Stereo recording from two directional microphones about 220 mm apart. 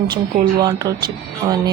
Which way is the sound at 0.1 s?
20° right (ahead or behind).